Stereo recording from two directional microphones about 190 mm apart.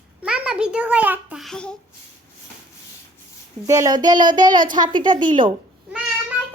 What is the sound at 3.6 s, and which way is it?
Speech, 15° right (ahead or behind).